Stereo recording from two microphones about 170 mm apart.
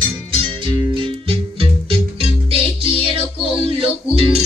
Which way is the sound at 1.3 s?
30° right (ahead or behind).